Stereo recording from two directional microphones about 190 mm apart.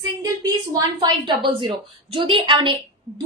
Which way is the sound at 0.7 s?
20° right (ahead or behind).